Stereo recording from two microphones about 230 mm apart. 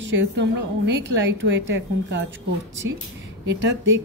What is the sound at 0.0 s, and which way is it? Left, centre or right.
Speech, right.